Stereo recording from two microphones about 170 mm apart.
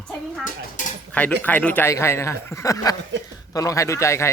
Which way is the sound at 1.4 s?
10° left (ahead or behind).